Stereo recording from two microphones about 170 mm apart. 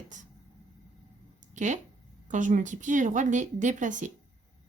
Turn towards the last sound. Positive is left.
turn(degrees=-50)  # may be behind; listen again after turning